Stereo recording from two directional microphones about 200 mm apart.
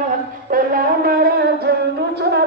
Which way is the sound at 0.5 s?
45° right (ahead or behind).